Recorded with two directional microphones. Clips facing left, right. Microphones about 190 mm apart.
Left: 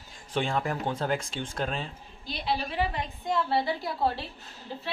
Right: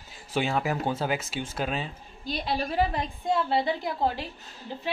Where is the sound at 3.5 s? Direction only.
20° right (ahead or behind).